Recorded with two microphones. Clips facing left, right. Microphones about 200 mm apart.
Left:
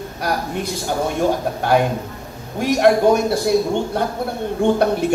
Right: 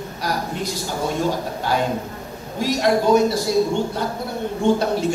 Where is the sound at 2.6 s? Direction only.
60° left (ahead or behind).